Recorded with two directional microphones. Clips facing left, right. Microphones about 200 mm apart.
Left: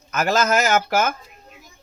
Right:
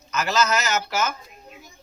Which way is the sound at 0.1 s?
50° left (ahead or behind).